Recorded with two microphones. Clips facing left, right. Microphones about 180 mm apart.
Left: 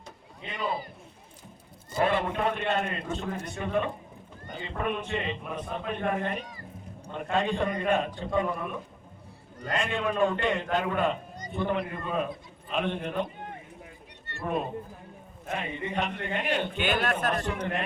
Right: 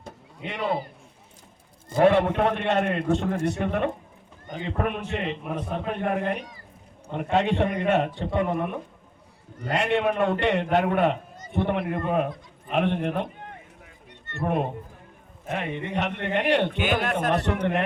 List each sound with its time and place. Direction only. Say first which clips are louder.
0.4 s a man's voice: right 5 dB; 75° right (ahead or behind)
1.9 s a man's voice: right 7 dB; 70° right (ahead or behind)
14.4 s a man's voice: right 4 dB; 70° right (ahead or behind)